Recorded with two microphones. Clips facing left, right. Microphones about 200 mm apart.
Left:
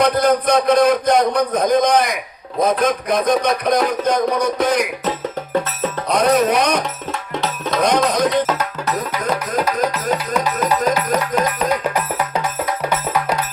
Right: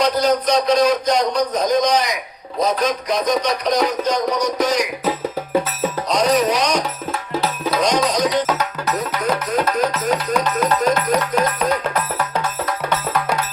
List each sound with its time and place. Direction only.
0.0 s a man's voice: 55° left (ahead or behind)
2.8 s music: 55° left (ahead or behind)
3.8 s a man's voice: 55° left (ahead or behind)
6.1 s a man's voice: 55° left (ahead or behind)
7.3 s music: 5° right (ahead or behind)
7.8 s music: 55° left (ahead or behind)
8.4 s music: centre (ahead or behind)